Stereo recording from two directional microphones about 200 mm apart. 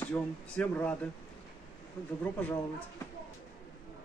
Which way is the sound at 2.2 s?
5° left (ahead or behind).